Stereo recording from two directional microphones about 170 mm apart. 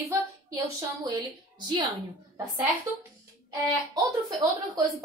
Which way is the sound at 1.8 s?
30° right (ahead or behind).